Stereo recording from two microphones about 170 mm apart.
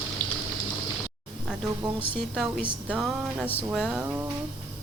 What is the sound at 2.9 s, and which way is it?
A woman's voice, 5° right (ahead or behind).